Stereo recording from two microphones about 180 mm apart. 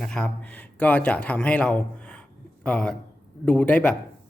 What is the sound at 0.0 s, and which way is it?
A man's voice, 5° left (ahead or behind).